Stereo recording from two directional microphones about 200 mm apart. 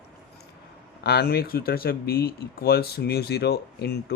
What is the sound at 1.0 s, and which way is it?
Speech, 55° left (ahead or behind).